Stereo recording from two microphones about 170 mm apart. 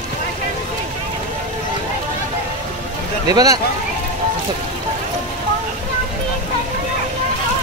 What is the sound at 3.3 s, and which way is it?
Speech, 20° right (ahead or behind).